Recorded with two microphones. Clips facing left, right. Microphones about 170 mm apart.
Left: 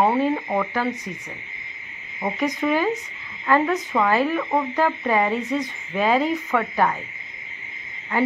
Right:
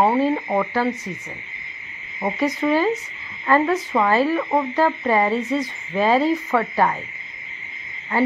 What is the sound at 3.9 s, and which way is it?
Speech, 10° right (ahead or behind).